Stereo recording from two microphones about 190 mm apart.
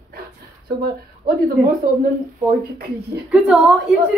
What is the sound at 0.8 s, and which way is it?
Speech, 50° right (ahead or behind).